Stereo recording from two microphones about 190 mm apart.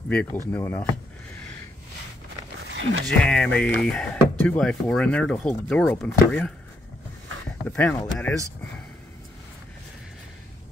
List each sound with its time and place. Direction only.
0.1 s speech: 5° left (ahead or behind)
2.7 s a sound: 75° right (ahead or behind)
3.2 s speech: 5° left (ahead or behind)
7.6 s speech: 10° left (ahead or behind)